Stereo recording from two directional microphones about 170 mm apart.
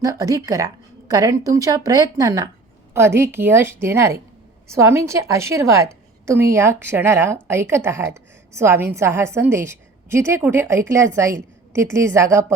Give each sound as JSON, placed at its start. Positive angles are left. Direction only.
{"t": 0.0, "sound": "a woman's voice", "side_deg": -20}